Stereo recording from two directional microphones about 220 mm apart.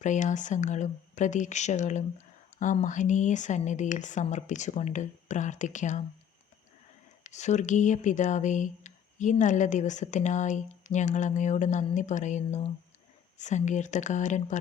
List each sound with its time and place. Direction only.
0.0 s speech: 35° left (ahead or behind)
7.3 s speech: 30° left (ahead or behind)